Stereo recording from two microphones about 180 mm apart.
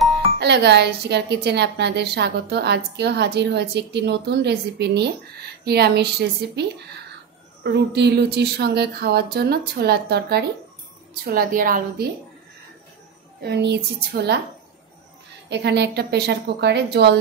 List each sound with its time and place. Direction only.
0.4 s a woman's voice: 70° right (ahead or behind)
7.6 s speech: 70° right (ahead or behind)
11.2 s a woman's voice: 50° right (ahead or behind)
13.4 s speech: 70° right (ahead or behind)
15.5 s a woman's voice: 70° right (ahead or behind)